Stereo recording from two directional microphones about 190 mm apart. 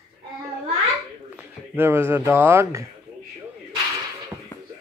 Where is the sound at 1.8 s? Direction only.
10° right (ahead or behind).